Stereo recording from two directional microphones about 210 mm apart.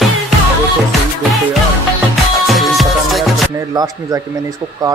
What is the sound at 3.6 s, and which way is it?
Speech, 15° right (ahead or behind).